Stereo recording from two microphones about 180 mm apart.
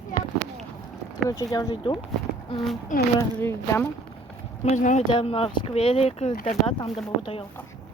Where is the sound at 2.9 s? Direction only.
45° left (ahead or behind).